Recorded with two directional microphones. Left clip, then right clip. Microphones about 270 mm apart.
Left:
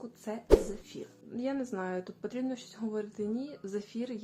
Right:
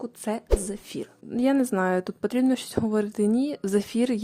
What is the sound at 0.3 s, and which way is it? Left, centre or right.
Speech, right.